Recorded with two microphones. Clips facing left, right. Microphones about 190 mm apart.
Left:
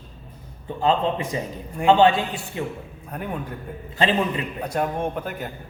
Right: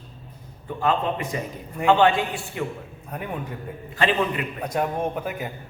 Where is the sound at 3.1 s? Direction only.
Centre (ahead or behind).